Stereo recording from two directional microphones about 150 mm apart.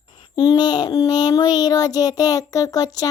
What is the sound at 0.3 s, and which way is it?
Child singing, 30° left (ahead or behind).